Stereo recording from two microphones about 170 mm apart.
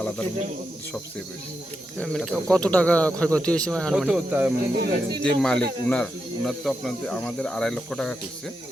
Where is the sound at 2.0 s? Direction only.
5° left (ahead or behind).